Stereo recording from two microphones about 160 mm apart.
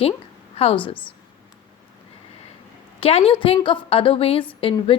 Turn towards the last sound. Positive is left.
turn(degrees=35)  # may be behind; listen again after turning